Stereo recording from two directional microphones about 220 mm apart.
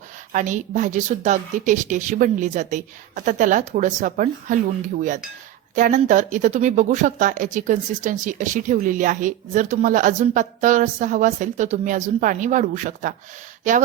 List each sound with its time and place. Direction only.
0.3 s speech: 35° right (ahead or behind)